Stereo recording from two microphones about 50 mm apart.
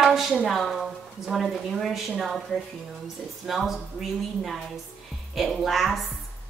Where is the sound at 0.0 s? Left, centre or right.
Centre.